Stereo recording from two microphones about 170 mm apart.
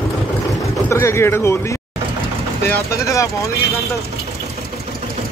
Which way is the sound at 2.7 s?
20° left (ahead or behind).